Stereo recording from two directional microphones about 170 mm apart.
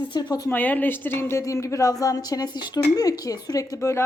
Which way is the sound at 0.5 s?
10° left (ahead or behind).